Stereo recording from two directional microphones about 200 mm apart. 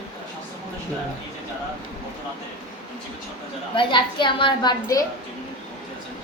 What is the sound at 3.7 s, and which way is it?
A woman's voice, 25° left (ahead or behind).